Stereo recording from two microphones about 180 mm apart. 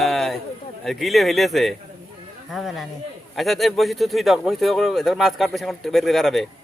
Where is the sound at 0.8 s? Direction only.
Centre (ahead or behind).